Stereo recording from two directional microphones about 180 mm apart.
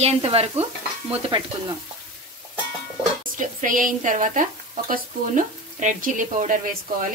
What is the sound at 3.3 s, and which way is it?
Speech, 45° right (ahead or behind).